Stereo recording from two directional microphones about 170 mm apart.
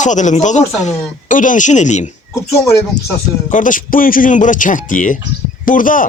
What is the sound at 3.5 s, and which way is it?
Speech, 50° left (ahead or behind).